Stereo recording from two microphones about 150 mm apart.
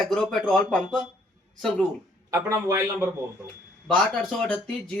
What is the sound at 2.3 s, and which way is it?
Speech, 20° right (ahead or behind).